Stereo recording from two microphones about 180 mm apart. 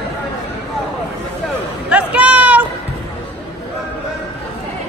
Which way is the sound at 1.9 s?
5° right (ahead or behind).